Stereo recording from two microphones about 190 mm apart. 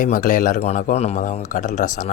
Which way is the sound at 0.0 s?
45° left (ahead or behind).